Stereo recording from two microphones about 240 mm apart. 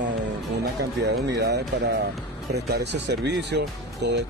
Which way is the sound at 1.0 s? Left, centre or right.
Right.